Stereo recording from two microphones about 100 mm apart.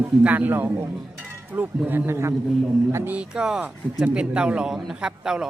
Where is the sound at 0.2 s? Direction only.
15° right (ahead or behind).